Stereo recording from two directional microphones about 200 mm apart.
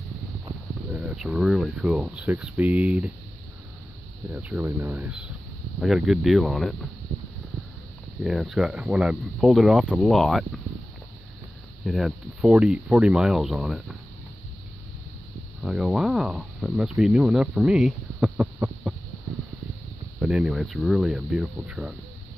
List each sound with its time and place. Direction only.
0.9 s speech: 5° right (ahead or behind)
4.3 s speech: 10° right (ahead or behind)
8.2 s speech: 5° right (ahead or behind)
11.8 s speech: centre (ahead or behind)
15.6 s speech: 5° right (ahead or behind)
18.9 s hum: 5° right (ahead or behind)
20.2 s speech: 5° right (ahead or behind)